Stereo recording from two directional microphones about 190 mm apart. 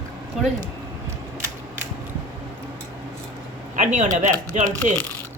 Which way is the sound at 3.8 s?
40° right (ahead or behind).